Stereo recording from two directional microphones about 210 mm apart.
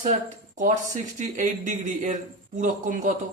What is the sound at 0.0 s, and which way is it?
A man's voice, 35° right (ahead or behind).